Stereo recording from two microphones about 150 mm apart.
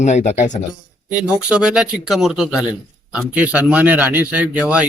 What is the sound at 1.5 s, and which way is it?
Speech, 5° right (ahead or behind).